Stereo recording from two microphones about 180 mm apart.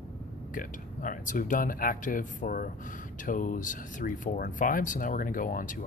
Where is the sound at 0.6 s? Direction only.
45° left (ahead or behind).